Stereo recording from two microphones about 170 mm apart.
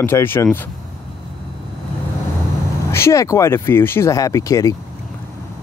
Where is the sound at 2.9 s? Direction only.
15° left (ahead or behind).